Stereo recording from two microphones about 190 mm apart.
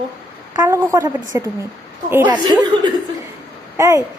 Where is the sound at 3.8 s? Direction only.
15° right (ahead or behind).